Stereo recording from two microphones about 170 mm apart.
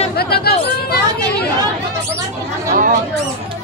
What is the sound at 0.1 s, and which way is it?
Chatter, 65° left (ahead or behind).